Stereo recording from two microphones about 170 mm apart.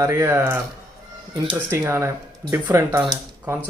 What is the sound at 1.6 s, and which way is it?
Speech, 15° right (ahead or behind).